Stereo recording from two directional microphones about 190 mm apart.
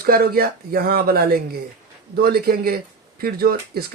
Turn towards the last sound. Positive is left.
turn(degrees=-50)  # may be behind; listen again after turning